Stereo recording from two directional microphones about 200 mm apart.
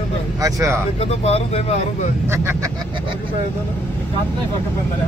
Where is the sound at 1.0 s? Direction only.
30° left (ahead or behind).